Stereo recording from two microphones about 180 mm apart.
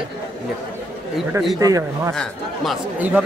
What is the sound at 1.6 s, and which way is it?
Speech, 20° right (ahead or behind).